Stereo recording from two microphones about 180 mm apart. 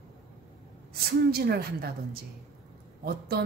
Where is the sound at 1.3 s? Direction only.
60° right (ahead or behind).